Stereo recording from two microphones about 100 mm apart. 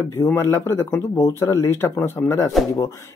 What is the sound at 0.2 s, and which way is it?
Speech, 30° left (ahead or behind).